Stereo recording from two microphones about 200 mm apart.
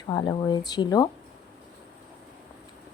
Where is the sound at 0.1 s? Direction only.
20° left (ahead or behind).